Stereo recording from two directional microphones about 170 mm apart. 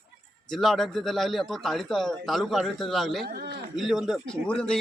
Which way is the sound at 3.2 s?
65° right (ahead or behind).